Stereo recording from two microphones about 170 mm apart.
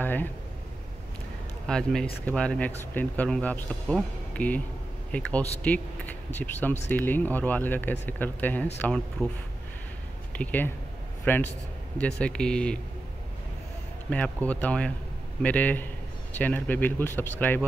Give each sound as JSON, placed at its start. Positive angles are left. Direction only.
{"t": 0.0, "sound": "a sound", "side_deg": 10}
{"t": 1.7, "sound": "speech", "side_deg": 5}
{"t": 10.3, "sound": "speech", "side_deg": 10}
{"t": 14.1, "sound": "speech", "side_deg": 10}